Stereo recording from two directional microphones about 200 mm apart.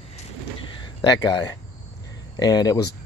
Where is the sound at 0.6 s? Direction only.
20° left (ahead or behind).